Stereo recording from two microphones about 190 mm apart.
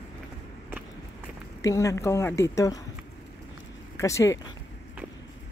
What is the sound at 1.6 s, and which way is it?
Speech, 15° left (ahead or behind).